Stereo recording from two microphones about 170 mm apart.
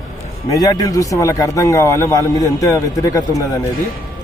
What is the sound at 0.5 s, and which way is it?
A man's voice, 20° left (ahead or behind).